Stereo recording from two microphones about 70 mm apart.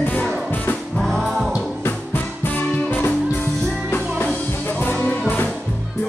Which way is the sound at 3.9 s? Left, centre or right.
Left.